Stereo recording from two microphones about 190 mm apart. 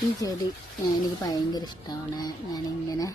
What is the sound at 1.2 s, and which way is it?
Speech, 20° left (ahead or behind).